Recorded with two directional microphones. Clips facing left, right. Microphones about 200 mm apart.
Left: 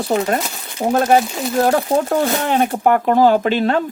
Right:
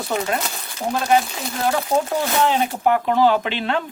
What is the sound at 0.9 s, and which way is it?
Speech, 50° left (ahead or behind).